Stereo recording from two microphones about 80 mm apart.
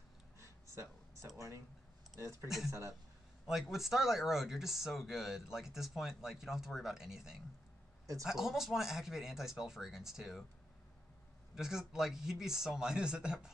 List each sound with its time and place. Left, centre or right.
0.4 s a sound: right
2.4 s speech: centre
11.5 s speech: centre